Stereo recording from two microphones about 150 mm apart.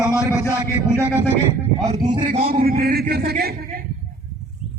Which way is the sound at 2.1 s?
60° right (ahead or behind).